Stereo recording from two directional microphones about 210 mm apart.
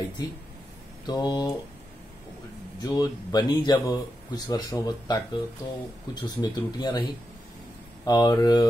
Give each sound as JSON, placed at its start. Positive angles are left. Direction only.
{"t": 1.0, "sound": "speech", "side_deg": 20}
{"t": 2.8, "sound": "speech", "side_deg": 20}